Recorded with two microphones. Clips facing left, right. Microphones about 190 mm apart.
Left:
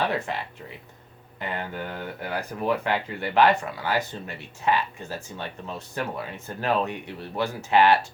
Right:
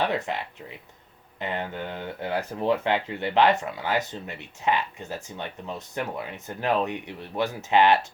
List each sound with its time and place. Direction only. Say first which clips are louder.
0.0 s speech: even; 20° right (ahead or behind)
1.4 s speech: right 1 dB; 20° right (ahead or behind)